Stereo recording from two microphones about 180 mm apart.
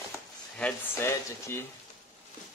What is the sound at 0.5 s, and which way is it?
Speech, 10° left (ahead or behind).